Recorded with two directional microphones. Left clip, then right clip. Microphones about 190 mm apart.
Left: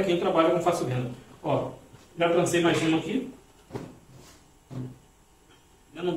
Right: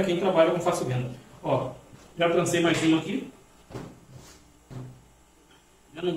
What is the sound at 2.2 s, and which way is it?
Speech, centre (ahead or behind).